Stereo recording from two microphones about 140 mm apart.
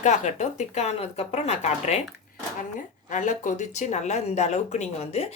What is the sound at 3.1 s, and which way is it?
Speech, 65° left (ahead or behind).